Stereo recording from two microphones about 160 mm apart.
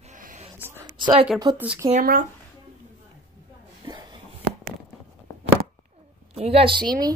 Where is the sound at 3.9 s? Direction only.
25° right (ahead or behind).